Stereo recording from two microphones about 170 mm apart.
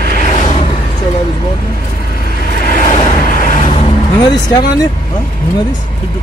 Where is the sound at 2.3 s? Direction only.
55° left (ahead or behind).